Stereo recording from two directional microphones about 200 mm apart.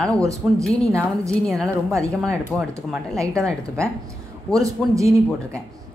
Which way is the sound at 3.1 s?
15° right (ahead or behind).